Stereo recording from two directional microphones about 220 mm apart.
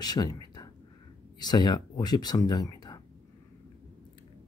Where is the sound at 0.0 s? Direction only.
20° left (ahead or behind).